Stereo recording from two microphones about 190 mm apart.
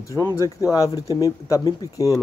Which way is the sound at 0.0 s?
20° left (ahead or behind).